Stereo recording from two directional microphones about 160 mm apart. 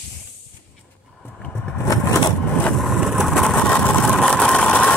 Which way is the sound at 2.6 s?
Centre (ahead or behind).